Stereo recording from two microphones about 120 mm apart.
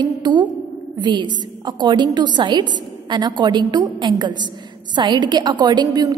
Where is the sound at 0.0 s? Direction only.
35° right (ahead or behind).